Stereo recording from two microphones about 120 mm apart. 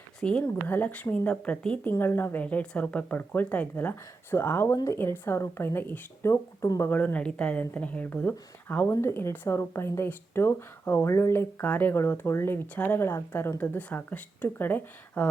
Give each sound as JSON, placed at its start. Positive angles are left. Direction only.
{"t": 0.2, "sound": "a woman's voice", "side_deg": 10}